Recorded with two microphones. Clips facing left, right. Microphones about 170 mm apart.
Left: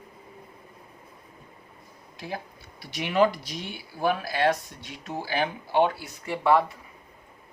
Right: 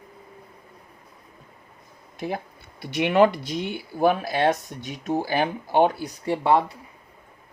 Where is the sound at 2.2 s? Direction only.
55° right (ahead or behind).